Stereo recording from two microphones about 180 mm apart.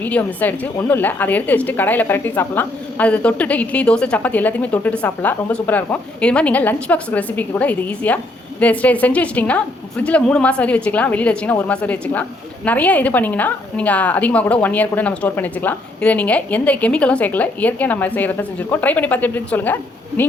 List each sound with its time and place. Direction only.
0.0 s a woman's voice: 10° left (ahead or behind)